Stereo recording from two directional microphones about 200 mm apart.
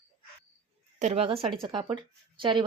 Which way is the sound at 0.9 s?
30° right (ahead or behind).